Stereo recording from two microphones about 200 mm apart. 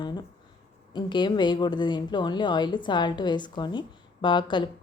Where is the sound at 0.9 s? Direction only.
20° left (ahead or behind).